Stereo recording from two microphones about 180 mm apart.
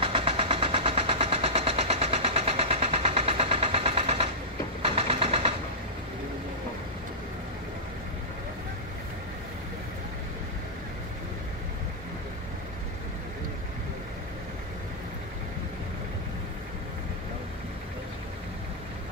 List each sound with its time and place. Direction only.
0.0 s vehicle: 30° right (ahead or behind)